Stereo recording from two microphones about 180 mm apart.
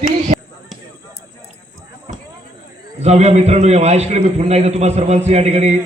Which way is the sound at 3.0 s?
35° right (ahead or behind).